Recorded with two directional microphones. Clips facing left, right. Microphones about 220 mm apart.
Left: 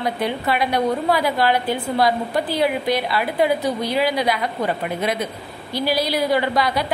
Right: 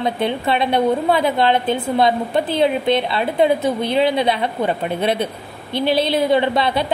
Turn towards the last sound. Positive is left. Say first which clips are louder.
# right 3 dB
turn(degrees=-25)  # may be behind; listen again after turning